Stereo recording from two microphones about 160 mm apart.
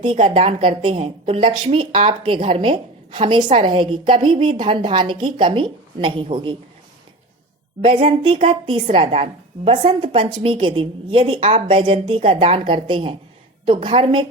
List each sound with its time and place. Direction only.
0.0 s a woman's voice: 35° right (ahead or behind)
7.9 s a woman's voice: 35° right (ahead or behind)